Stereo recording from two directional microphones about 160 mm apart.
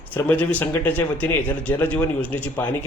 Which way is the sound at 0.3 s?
10° left (ahead or behind).